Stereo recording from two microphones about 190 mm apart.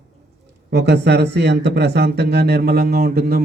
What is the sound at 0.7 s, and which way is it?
Speech, 65° right (ahead or behind).